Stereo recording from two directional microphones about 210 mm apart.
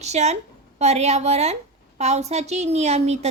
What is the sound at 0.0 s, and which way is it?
A woman's voice, 30° right (ahead or behind).